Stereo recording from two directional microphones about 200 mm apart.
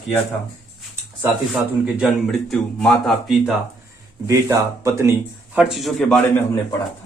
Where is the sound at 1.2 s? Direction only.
Centre (ahead or behind).